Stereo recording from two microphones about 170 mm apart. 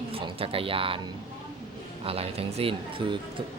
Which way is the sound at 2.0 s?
35° right (ahead or behind).